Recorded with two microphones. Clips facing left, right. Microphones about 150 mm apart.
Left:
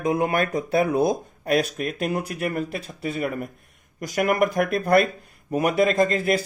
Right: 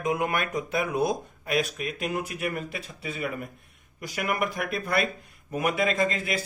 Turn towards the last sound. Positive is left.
turn(degrees=40)  # may be behind; listen again after turning